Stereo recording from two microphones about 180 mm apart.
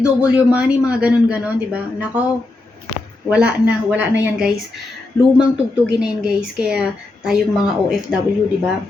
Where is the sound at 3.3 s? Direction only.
5° right (ahead or behind).